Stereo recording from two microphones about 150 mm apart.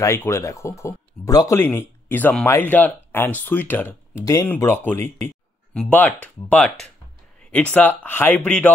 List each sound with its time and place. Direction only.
0.0 s speech: 15° left (ahead or behind)
8.0 s speech: 10° left (ahead or behind)